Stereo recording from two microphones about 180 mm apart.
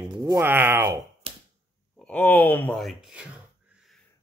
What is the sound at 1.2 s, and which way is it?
Finger snapping, 30° right (ahead or behind).